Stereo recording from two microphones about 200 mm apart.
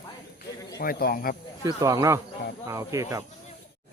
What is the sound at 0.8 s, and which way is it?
Speech, 45° left (ahead or behind).